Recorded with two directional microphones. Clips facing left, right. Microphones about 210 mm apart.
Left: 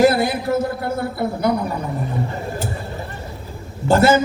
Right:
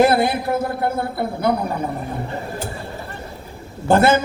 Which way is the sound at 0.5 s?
55° right (ahead or behind).